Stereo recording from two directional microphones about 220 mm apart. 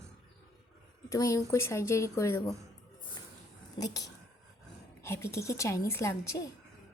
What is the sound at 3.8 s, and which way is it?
A woman's voice, 15° left (ahead or behind).